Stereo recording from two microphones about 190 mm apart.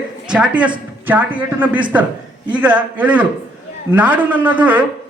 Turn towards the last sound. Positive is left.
turn(degrees=-10)  # may be behind; listen again after turning